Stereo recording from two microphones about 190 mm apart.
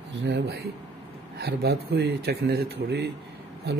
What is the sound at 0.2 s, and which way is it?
Speech, 60° right (ahead or behind).